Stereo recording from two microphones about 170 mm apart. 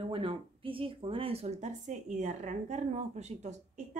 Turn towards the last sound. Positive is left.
turn(degrees=-40)  # may be behind; listen again after turning